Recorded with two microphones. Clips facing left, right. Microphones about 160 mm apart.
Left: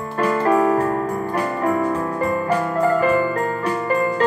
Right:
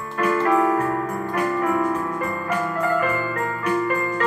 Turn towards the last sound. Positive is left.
turn(degrees=35)  # may be behind; listen again after turning